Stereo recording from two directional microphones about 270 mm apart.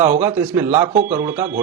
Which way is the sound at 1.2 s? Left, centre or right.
Centre.